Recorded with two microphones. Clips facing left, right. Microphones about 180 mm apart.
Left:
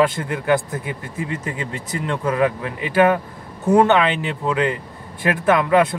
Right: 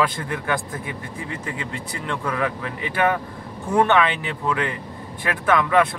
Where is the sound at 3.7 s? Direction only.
20° left (ahead or behind).